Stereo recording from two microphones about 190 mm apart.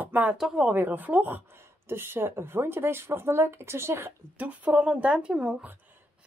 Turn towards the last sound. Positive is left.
turn(degrees=-5)  # may be behind; listen again after turning